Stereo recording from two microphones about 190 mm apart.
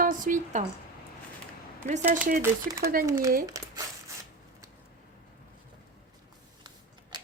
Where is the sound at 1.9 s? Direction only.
45° right (ahead or behind).